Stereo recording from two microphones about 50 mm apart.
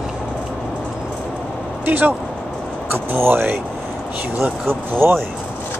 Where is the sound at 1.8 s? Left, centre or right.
Right.